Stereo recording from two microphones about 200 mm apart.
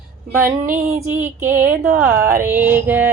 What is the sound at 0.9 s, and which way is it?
Speech, 15° right (ahead or behind).